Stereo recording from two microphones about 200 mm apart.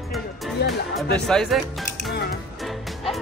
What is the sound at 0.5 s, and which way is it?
Speech, 55° left (ahead or behind).